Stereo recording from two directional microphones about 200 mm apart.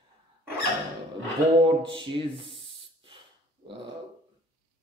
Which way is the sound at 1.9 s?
25° right (ahead or behind).